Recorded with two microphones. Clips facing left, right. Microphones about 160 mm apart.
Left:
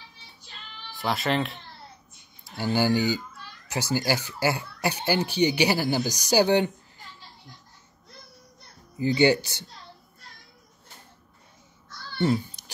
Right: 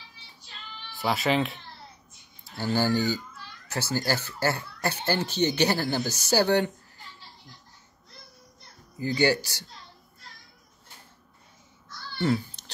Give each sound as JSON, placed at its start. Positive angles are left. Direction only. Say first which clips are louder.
{"t": 0.9, "sound": "speech", "louder": "right 1 dB", "side_deg": 0}
{"t": 2.5, "sound": "speech", "louder": "left 2 dB", "side_deg": 15}
{"t": 8.9, "sound": "speech", "louder": "left 3 dB", "side_deg": 20}
{"t": 12.6, "sound": "a sound", "louder": "left 1 dB", "side_deg": 10}